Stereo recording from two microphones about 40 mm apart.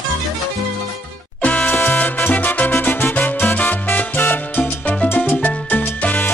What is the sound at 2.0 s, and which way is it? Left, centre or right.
Music, left.